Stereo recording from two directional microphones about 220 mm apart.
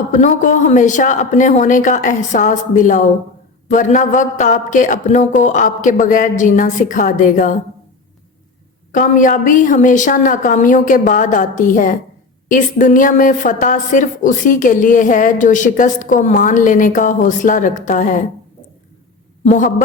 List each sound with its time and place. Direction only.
0.1 s a woman's voice: 35° left (ahead or behind)
8.9 s a woman's voice: 35° left (ahead or behind)
19.5 s a woman's voice: 35° left (ahead or behind)